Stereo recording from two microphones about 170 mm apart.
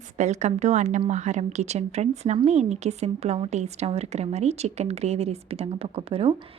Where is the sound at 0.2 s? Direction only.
40° right (ahead or behind).